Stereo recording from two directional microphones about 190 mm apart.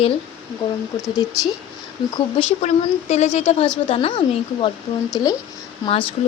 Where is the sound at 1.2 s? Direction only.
20° left (ahead or behind).